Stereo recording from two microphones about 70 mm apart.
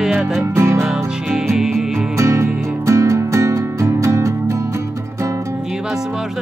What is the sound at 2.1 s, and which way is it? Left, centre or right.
Music, right.